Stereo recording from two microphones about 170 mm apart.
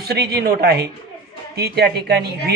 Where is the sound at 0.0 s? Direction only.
70° right (ahead or behind).